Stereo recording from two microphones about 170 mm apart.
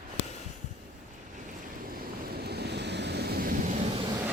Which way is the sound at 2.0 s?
70° right (ahead or behind).